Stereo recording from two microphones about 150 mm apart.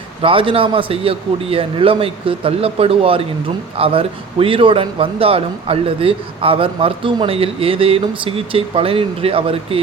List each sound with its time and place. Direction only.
0.2 s a man's voice: 35° right (ahead or behind)